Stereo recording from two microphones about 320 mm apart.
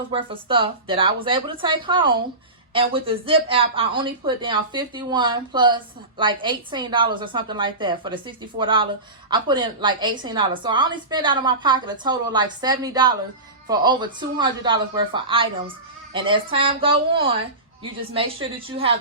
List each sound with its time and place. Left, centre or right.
0.1 s speech: centre
18.7 s speech: centre